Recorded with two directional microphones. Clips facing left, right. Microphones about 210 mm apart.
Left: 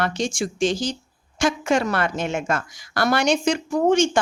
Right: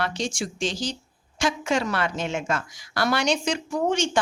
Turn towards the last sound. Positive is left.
turn(degrees=50)  # may be behind; listen again after turning